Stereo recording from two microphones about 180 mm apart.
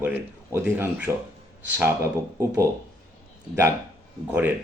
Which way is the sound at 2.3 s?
15° right (ahead or behind).